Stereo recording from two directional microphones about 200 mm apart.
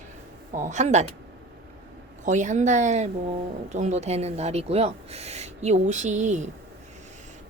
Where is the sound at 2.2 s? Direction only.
35° right (ahead or behind).